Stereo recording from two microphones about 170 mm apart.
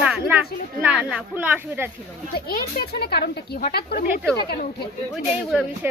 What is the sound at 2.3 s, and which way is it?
Speech, 65° left (ahead or behind).